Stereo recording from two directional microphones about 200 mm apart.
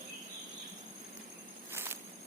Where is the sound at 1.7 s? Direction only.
10° right (ahead or behind).